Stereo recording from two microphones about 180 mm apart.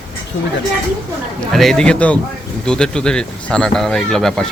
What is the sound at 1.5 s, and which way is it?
Speech, centre (ahead or behind).